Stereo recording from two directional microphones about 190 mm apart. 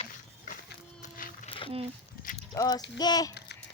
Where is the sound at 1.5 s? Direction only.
30° left (ahead or behind).